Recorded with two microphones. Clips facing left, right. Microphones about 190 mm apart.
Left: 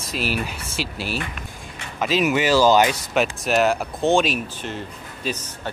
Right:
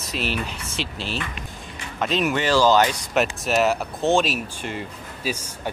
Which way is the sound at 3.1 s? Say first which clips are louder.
Left 1 dB; centre (ahead or behind).